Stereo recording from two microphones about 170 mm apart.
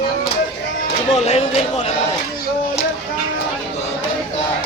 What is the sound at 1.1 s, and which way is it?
Speech, 40° left (ahead or behind).